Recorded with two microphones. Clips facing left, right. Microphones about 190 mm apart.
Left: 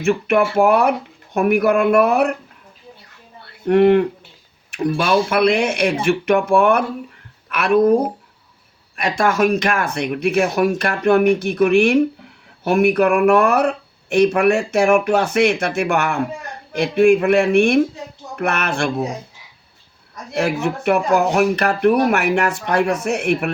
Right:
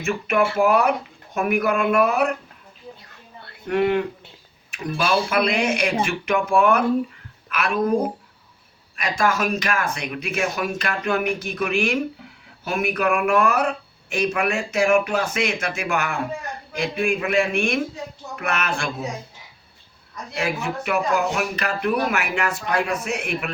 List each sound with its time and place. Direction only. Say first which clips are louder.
0.3 s speech: left 3 dB; 55° left (ahead or behind)
3.7 s speech: left 8 dB; 55° left (ahead or behind)
9.0 s speech: left 5 dB; 60° left (ahead or behind)
20.3 s speech: left 6 dB; 50° left (ahead or behind)